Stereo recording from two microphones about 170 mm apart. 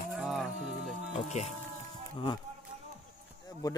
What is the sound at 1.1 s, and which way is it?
Insect, 40° left (ahead or behind).